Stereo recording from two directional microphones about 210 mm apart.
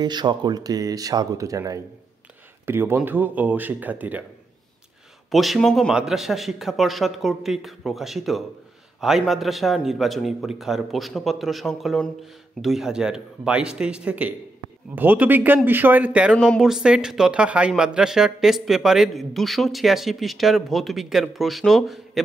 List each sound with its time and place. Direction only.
0.0 s speech: 20° right (ahead or behind)
5.3 s speech: centre (ahead or behind)